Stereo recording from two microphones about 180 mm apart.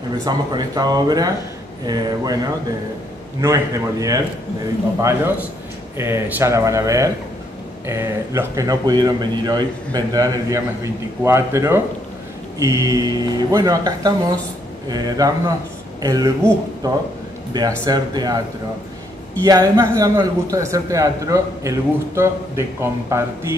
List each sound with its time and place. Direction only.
0.2 s a man's voice: 20° right (ahead or behind)
19.4 s a man's voice: 20° right (ahead or behind)